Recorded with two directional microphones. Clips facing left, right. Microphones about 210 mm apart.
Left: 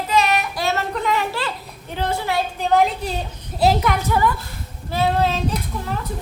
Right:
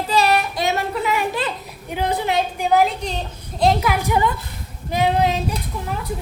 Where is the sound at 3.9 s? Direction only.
15° right (ahead or behind).